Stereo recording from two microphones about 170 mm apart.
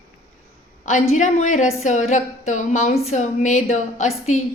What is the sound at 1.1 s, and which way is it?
A woman's voice, 45° left (ahead or behind).